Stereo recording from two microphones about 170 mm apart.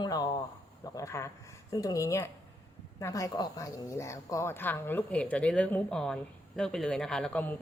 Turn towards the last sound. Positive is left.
turn(degrees=10)  # may be behind; listen again after turning